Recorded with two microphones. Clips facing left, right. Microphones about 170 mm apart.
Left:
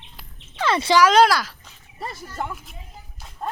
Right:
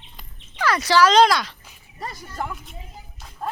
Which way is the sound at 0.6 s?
25° left (ahead or behind).